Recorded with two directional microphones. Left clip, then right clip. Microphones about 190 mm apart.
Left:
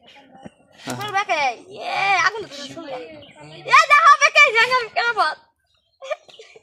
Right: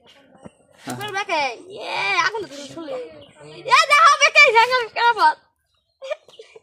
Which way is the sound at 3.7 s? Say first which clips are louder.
Left 1 dB; 30° right (ahead or behind).